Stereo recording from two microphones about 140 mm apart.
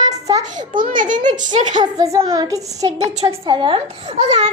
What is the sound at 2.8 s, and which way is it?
Speech, 50° right (ahead or behind).